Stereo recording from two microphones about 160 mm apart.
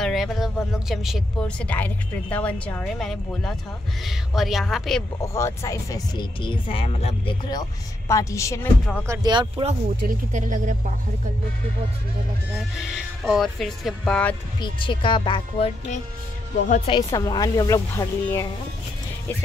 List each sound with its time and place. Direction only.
0.0 s a sound: centre (ahead or behind)
0.7 s speech: centre (ahead or behind)
2.3 s speech: 10° left (ahead or behind)
5.2 s speech: 20° left (ahead or behind)
8.1 s speech: 20° left (ahead or behind)
8.9 s speech: 15° right (ahead or behind)
10.0 s speech: 50° right (ahead or behind)
12.7 s speech: centre (ahead or behind)
14.6 s speech: 30° left (ahead or behind)
16.6 s speech: 50° left (ahead or behind)
17.1 s speech: 20° left (ahead or behind)